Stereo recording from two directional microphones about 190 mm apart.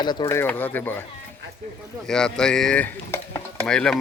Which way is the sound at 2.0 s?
5° left (ahead or behind).